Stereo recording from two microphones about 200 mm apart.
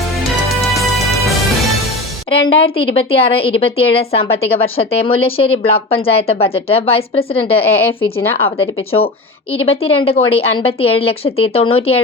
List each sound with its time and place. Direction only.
0.4 s music: centre (ahead or behind)
2.4 s a woman's voice: 80° left
2.7 s a woman's voice: 30° left (ahead or behind)